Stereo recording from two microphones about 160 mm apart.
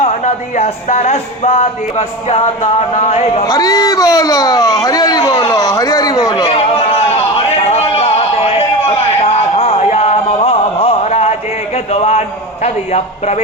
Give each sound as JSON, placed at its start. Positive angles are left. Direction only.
{"t": 0.0, "sound": "speech", "side_deg": 45}
{"t": 3.4, "sound": "speech", "side_deg": 20}
{"t": 5.2, "sound": "a sound", "side_deg": 30}
{"t": 12.6, "sound": "speech", "side_deg": 45}